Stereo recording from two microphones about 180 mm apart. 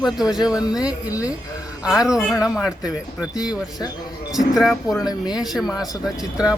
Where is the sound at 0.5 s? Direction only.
20° left (ahead or behind).